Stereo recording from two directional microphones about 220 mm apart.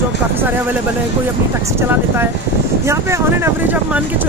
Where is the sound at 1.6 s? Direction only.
10° right (ahead or behind).